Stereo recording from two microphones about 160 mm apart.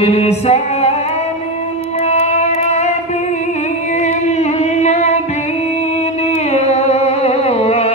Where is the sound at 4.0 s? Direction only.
45° left (ahead or behind).